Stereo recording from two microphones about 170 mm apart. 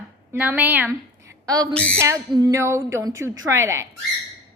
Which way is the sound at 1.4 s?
20° right (ahead or behind).